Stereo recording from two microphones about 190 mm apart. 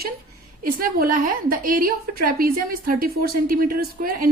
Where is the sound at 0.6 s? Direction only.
50° right (ahead or behind).